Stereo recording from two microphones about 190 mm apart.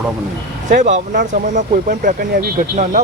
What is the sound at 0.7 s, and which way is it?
Speech, 40° right (ahead or behind).